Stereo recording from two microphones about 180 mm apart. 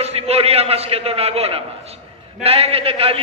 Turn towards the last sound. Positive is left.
turn(degrees=-30)  # may be behind; listen again after turning